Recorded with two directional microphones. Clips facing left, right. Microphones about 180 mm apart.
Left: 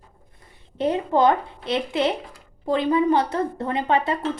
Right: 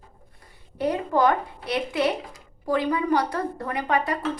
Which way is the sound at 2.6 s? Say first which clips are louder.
Left 4 dB; 25° left (ahead or behind).